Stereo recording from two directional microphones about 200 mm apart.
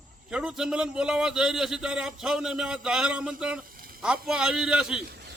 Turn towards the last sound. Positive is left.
turn(degrees=-5)  # may be behind; listen again after turning